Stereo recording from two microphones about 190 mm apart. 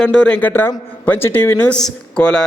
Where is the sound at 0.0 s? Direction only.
5° left (ahead or behind).